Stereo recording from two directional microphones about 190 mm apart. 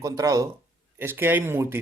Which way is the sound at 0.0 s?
15° right (ahead or behind).